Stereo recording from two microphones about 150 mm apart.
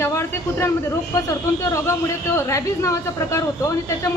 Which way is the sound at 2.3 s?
20° left (ahead or behind).